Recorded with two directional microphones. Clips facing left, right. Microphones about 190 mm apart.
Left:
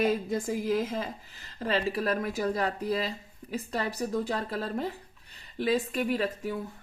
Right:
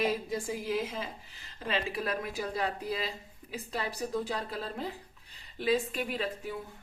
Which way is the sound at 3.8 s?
45° left (ahead or behind).